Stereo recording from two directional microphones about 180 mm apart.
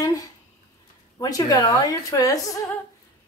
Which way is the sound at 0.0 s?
20° left (ahead or behind).